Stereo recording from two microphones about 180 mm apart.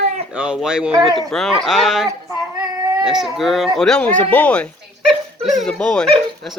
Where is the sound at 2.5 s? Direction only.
20° right (ahead or behind).